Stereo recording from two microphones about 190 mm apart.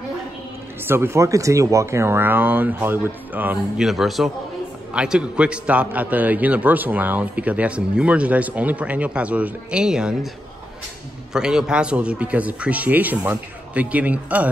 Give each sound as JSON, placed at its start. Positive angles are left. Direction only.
{"t": 0.8, "sound": "a man's voice", "side_deg": -15}
{"t": 11.3, "sound": "a man's voice", "side_deg": -5}